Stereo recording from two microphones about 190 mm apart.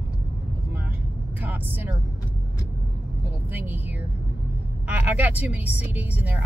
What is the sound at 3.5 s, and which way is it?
Speech, 10° right (ahead or behind).